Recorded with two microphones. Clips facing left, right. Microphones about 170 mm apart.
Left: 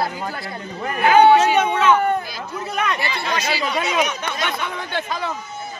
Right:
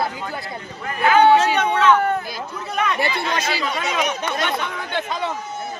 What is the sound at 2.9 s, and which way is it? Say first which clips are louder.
Speech: right 2 dB; 50° right (ahead or behind).